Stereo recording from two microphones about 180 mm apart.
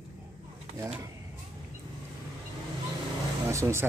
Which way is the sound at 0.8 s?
10° right (ahead or behind).